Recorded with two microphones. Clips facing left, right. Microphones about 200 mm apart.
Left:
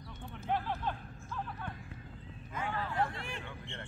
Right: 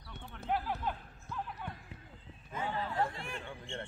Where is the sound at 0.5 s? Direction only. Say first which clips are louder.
Even; 5° right (ahead or behind).